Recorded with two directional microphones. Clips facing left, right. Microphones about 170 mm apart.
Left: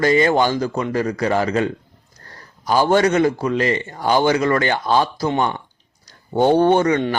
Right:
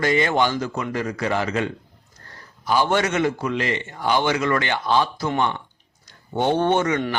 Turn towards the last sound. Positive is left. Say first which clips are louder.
# left 5 dB
turn(degrees=35)  # may be behind; listen again after turning